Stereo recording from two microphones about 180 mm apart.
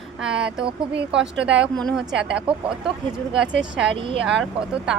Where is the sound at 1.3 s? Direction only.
75° right (ahead or behind).